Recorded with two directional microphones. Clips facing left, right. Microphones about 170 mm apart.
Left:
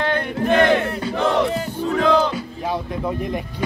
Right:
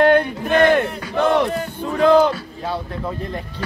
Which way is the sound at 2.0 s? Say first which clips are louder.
Right 5 dB; 55° right (ahead or behind).